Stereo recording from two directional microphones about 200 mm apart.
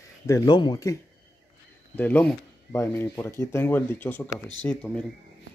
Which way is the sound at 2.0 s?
10° left (ahead or behind).